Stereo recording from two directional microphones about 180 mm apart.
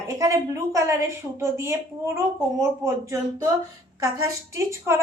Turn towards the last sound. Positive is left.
turn(degrees=-15)  # may be behind; listen again after turning